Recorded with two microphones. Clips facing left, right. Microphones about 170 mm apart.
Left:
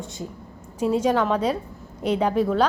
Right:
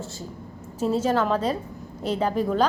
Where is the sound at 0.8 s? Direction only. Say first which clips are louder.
Left 2 dB; 10° left (ahead or behind).